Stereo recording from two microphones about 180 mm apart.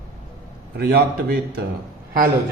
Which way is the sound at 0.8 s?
60° right (ahead or behind).